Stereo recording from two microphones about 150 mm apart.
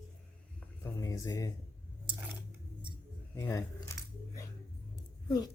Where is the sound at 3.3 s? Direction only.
20° left (ahead or behind).